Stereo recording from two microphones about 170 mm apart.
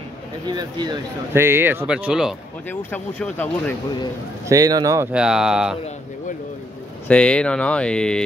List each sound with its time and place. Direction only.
0.5 s speech: 25° right (ahead or behind)
1.3 s speech: 15° right (ahead or behind)
2.7 s speech: 10° left (ahead or behind)
4.5 s speech: 20° right (ahead or behind)
5.1 s speech: 5° right (ahead or behind)
7.1 s speech: 5° left (ahead or behind)